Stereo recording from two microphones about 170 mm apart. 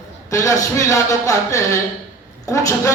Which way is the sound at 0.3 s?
20° left (ahead or behind).